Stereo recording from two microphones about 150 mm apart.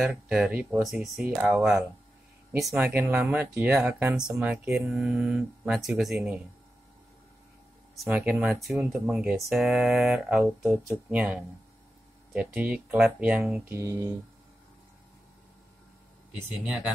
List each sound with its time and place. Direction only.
0.0 s speech: 5° right (ahead or behind)
2.9 s speech: 15° right (ahead or behind)
8.1 s speech: 5° right (ahead or behind)
16.3 s speech: 5° right (ahead or behind)